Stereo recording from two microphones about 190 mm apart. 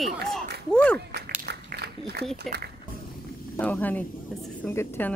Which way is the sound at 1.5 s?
60° right (ahead or behind).